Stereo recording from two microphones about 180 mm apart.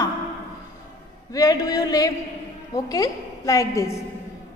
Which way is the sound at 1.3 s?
20° left (ahead or behind).